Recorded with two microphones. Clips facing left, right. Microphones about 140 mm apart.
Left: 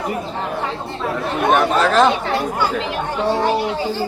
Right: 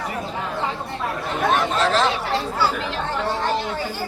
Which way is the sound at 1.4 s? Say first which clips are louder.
Left 4 dB; 60° left (ahead or behind).